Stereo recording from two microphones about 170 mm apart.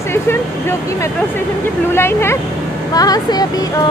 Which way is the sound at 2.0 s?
15° left (ahead or behind).